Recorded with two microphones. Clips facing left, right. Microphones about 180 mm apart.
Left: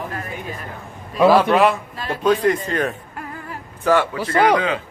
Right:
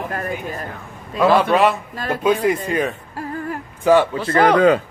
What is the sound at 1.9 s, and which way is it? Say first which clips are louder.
Speech: right 3 dB; 50° right (ahead or behind).